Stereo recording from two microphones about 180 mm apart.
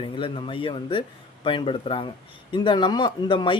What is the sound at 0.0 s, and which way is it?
Speech, 30° left (ahead or behind).